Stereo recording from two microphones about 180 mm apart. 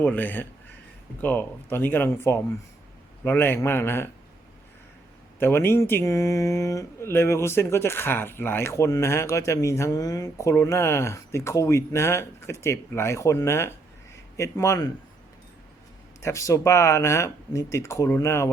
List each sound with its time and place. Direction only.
0.0 s speech: 10° left (ahead or behind)
5.4 s speech: 15° left (ahead or behind)
16.2 s speech: 15° left (ahead or behind)